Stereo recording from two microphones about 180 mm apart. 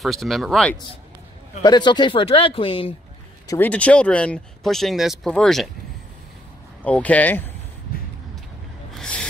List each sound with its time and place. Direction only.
0.0 s speech: centre (ahead or behind)
1.6 s speech: 25° left (ahead or behind)
3.4 s speech: 10° left (ahead or behind)
6.8 s speech: 10° left (ahead or behind)
8.9 s a sound: 5° left (ahead or behind)